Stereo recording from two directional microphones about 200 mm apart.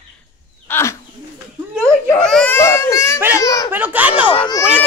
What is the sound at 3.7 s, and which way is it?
Speech, 10° right (ahead or behind).